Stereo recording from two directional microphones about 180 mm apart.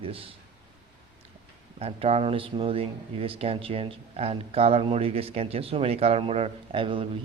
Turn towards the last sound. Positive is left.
turn(degrees=-30)  # may be behind; listen again after turning